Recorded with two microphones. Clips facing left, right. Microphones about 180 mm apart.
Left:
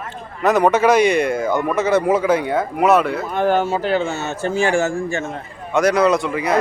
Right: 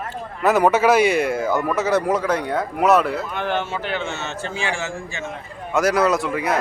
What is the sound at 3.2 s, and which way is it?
Speech, 40° left (ahead or behind).